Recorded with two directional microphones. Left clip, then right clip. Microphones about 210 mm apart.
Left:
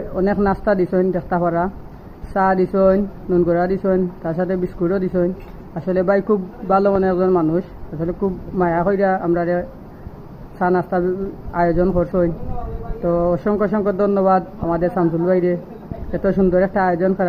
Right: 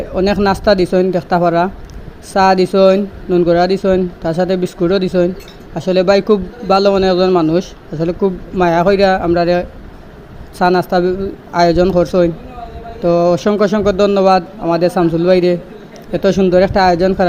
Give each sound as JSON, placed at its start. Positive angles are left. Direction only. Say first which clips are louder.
{"t": 0.1, "sound": "a man's voice", "louder": "right 5 dB", "side_deg": -35}